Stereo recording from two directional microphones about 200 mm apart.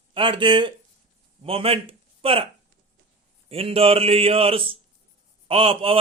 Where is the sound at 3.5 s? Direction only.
30° right (ahead or behind).